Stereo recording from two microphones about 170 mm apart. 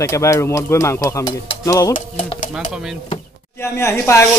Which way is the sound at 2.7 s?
5° right (ahead or behind).